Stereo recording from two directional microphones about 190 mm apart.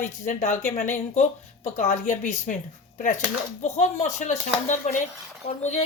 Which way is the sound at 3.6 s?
35° left (ahead or behind).